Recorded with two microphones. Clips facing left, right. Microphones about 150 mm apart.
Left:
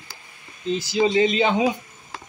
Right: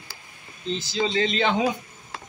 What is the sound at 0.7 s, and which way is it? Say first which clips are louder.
Speech: left 5 dB; 10° left (ahead or behind).